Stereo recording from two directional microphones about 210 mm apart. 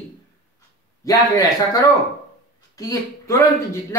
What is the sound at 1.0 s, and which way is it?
Speech, 15° left (ahead or behind).